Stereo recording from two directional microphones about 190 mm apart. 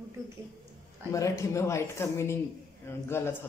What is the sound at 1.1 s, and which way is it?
Speech, 15° left (ahead or behind).